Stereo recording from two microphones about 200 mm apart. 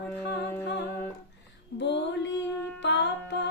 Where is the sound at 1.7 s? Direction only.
60° left (ahead or behind).